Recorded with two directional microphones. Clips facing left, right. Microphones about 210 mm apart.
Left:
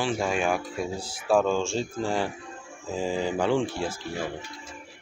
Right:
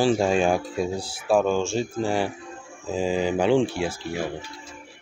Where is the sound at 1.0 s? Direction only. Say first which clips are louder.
Even; 5° right (ahead or behind).